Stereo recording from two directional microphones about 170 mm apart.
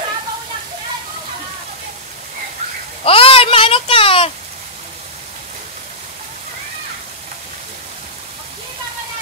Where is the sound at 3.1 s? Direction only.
35° left (ahead or behind).